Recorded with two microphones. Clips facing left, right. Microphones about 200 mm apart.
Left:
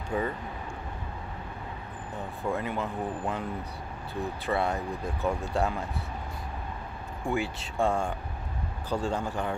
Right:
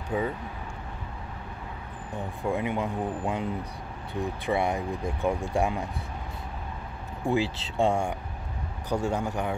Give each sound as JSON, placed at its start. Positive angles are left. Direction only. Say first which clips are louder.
{"t": 0.1, "sound": "speech", "louder": "right 1 dB", "side_deg": -5}
{"t": 2.4, "sound": "speech", "louder": "right 3 dB", "side_deg": -15}
{"t": 7.2, "sound": "speech", "louder": "right 4 dB", "side_deg": -25}